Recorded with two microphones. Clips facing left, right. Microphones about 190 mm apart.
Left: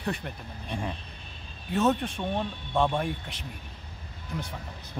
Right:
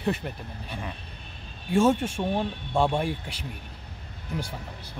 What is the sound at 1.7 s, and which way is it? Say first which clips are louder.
Speech: right 4 dB; 10° right (ahead or behind).